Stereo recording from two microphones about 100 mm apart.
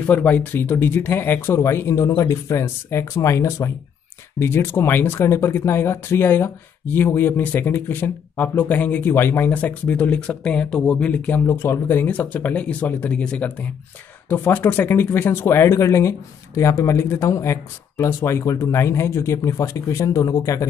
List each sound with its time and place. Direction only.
0.0 s speech: 15° left (ahead or behind); by 20.6 s 35° left (ahead or behind)